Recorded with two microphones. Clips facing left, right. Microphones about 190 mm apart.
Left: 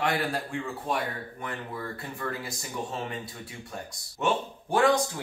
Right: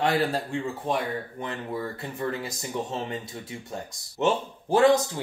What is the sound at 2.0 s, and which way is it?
Speech, 20° right (ahead or behind).